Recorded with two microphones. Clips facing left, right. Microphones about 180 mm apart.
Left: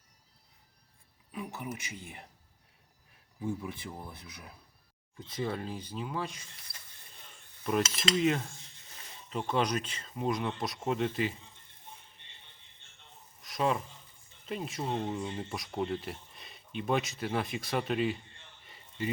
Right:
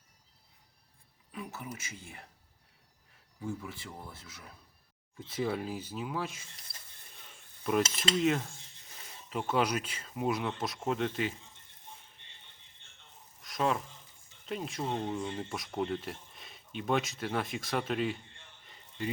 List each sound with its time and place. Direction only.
1.3 s speech: 15° left (ahead or behind)
3.4 s speech: 15° left (ahead or behind)
5.2 s speech: 5° right (ahead or behind)
7.6 s speech: centre (ahead or behind)
13.4 s a sound: centre (ahead or behind)
14.4 s speech: centre (ahead or behind)
18.7 s a sound: 5° left (ahead or behind)